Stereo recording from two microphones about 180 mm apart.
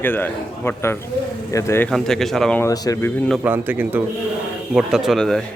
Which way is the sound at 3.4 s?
10° right (ahead or behind).